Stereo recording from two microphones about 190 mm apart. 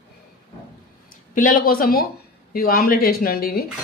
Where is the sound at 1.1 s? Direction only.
45° left (ahead or behind).